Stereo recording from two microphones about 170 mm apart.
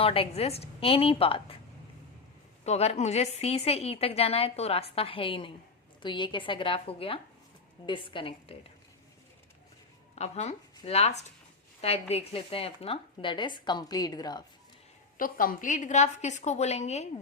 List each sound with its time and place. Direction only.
0.0 s a woman's voice: 35° left (ahead or behind)
2.6 s a woman's voice: 40° left (ahead or behind)
10.2 s a woman's voice: 40° left (ahead or behind); by 14.4 s 25° left (ahead or behind)
15.2 s a woman's voice: 55° left (ahead or behind); by 17.1 s 40° left (ahead or behind)